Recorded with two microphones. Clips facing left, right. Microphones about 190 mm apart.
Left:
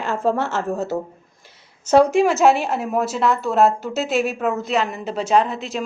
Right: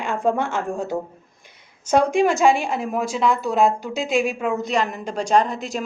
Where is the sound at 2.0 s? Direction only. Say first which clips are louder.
Left 3 dB; 5° left (ahead or behind).